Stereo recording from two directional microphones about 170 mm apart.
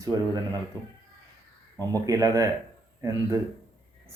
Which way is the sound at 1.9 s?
20° right (ahead or behind).